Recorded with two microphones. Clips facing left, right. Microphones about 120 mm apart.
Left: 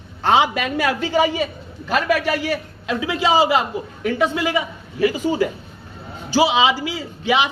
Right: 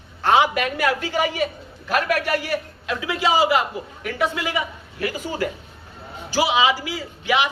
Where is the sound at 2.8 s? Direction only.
25° left (ahead or behind).